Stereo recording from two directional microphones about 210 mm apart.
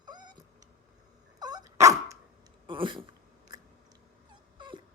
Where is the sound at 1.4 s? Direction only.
20° right (ahead or behind).